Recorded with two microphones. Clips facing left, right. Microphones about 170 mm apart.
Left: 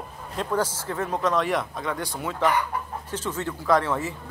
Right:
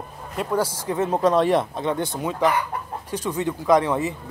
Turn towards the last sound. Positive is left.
turn(degrees=-15)  # may be behind; listen again after turning